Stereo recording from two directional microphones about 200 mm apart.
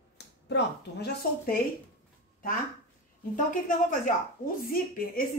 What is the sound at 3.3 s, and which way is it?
A woman's voice, 40° left (ahead or behind).